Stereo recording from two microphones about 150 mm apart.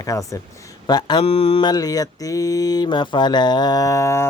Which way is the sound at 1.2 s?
40° left (ahead or behind).